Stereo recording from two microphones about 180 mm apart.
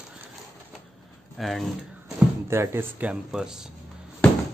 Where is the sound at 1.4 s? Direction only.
Centre (ahead or behind).